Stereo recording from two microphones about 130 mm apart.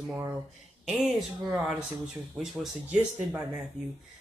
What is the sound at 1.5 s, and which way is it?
Speech, 5° right (ahead or behind).